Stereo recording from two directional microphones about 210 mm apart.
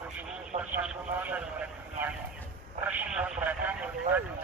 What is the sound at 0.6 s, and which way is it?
Vehicle, 5° right (ahead or behind).